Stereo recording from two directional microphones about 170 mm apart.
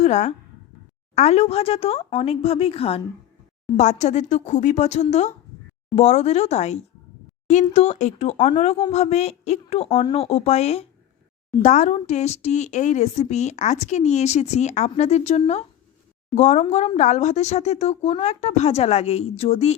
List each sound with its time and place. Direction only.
0.0 s speech: 40° left (ahead or behind)